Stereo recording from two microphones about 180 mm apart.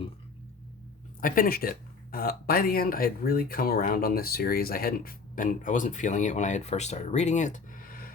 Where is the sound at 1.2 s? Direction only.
55° left (ahead or behind).